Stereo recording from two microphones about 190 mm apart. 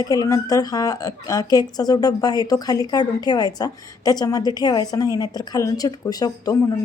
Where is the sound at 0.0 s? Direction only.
20° left (ahead or behind).